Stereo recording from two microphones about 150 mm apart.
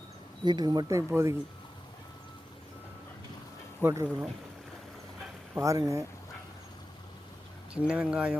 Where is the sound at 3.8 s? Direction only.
20° right (ahead or behind).